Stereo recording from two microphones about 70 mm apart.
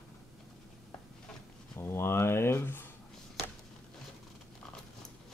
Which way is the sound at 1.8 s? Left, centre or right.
Left.